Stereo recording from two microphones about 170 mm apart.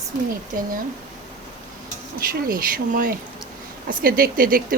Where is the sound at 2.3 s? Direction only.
60° right (ahead or behind).